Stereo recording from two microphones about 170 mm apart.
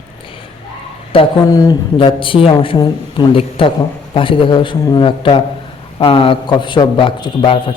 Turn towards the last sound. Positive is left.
turn(degrees=30)  # may be behind; listen again after turning